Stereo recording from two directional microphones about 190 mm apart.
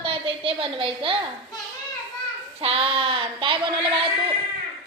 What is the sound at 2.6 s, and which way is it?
A woman's voice, 30° right (ahead or behind).